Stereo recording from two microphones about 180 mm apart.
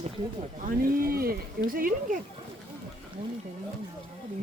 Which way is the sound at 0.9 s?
55° right (ahead or behind).